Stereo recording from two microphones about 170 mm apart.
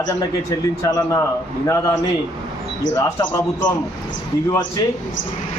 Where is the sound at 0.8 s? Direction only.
20° left (ahead or behind).